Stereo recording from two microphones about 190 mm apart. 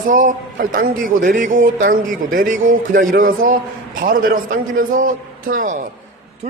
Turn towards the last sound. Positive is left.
turn(degrees=-45)  # may be behind; listen again after turning